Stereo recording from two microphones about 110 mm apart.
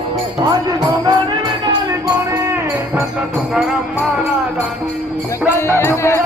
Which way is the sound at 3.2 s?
5° right (ahead or behind).